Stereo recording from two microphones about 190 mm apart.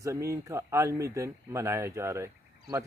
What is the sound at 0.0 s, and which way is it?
Speech, 15° right (ahead or behind).